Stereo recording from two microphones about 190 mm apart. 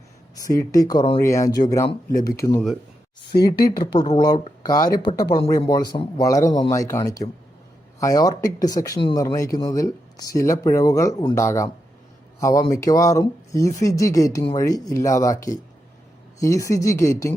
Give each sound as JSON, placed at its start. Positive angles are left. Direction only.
{"t": 0.3, "sound": "speech", "side_deg": 15}